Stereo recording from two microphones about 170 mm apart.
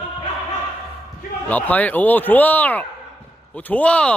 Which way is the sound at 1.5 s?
10° left (ahead or behind).